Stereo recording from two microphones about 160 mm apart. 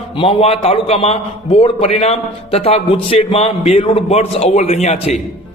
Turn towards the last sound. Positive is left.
turn(degrees=45)  # may be behind; listen again after turning